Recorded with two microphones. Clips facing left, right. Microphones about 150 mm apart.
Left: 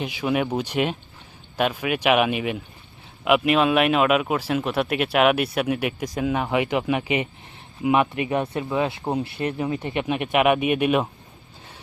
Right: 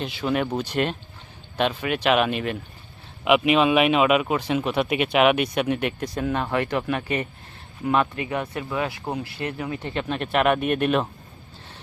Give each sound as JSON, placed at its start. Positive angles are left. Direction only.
{"t": 0.0, "sound": "speech", "side_deg": 10}